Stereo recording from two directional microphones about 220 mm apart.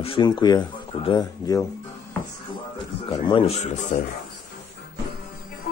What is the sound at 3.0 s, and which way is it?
Speech, 25° left (ahead or behind).